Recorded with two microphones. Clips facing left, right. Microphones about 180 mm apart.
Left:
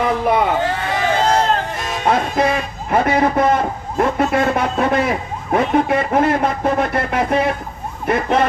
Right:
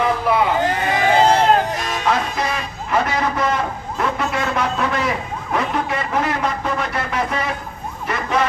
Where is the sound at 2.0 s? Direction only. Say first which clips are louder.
Left 5 dB; 55° left (ahead or behind).